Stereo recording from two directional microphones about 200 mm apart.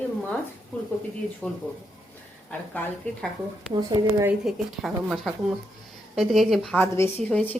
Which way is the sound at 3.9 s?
15° right (ahead or behind).